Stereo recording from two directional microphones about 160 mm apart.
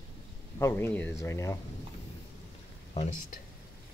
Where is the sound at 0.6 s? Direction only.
15° left (ahead or behind).